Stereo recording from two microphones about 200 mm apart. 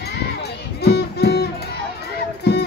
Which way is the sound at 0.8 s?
55° left (ahead or behind).